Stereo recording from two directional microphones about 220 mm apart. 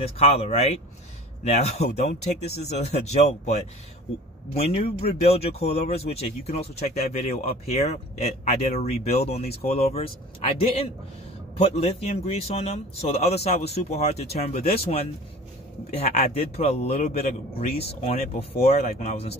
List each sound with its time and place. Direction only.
0.0 s speech: 30° left (ahead or behind)
4.6 s speech: 30° left (ahead or behind)